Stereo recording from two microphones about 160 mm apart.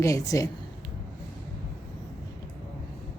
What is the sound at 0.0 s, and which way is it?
Speech, 20° left (ahead or behind).